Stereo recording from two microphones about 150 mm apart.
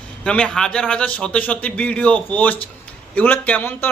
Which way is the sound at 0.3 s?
5° left (ahead or behind).